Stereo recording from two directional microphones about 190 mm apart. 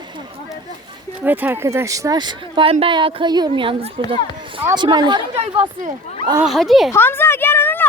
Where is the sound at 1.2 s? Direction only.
10° right (ahead or behind).